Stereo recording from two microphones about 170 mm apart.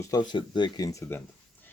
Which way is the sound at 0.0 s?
25° left (ahead or behind).